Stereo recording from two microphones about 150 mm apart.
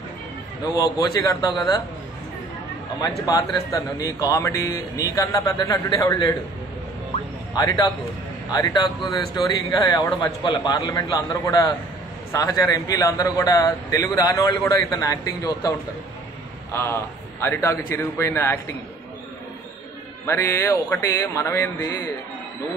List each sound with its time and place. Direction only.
0.7 s a man's voice: 25° left (ahead or behind)
3.3 s a man's voice: 25° left (ahead or behind)
7.5 s a man's voice: 25° left (ahead or behind)
16.7 s a man's voice: 15° left (ahead or behind)
20.2 s a man's voice: 20° left (ahead or behind)